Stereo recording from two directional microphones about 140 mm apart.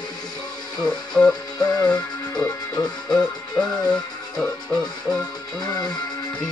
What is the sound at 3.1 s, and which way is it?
Music, 5° left (ahead or behind).